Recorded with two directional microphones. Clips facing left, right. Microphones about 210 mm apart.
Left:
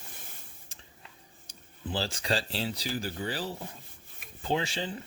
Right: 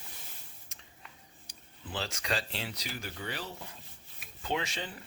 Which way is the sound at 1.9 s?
30° left (ahead or behind).